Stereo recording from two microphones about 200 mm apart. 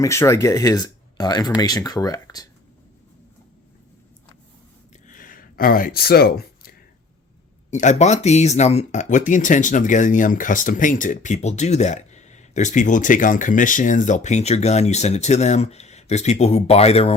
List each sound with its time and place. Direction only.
0.0 s speech: 15° left (ahead or behind)
5.0 s a sound: 45° left (ahead or behind)
7.7 s speech: 35° left (ahead or behind)